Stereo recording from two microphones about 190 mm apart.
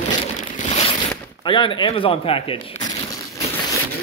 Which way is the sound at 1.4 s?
25° left (ahead or behind).